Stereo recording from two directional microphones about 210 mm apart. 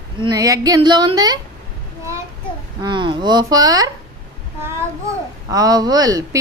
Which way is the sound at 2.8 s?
20° right (ahead or behind).